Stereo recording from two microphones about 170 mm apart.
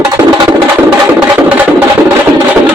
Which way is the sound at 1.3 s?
15° right (ahead or behind).